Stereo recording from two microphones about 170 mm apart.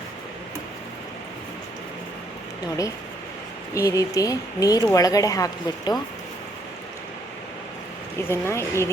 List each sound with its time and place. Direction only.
3.8 s speech: 20° left (ahead or behind)
8.3 s speech: 15° left (ahead or behind)